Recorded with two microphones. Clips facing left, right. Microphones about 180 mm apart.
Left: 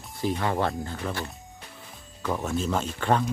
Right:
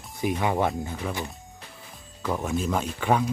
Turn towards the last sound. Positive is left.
turn(degrees=-10)  # may be behind; listen again after turning